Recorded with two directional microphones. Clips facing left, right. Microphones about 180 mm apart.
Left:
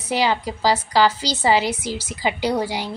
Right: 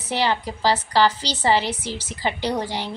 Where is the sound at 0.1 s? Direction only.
10° left (ahead or behind).